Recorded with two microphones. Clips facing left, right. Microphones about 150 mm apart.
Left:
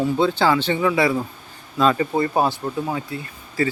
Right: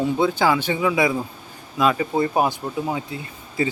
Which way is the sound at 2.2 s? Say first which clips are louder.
Even; 15° right (ahead or behind).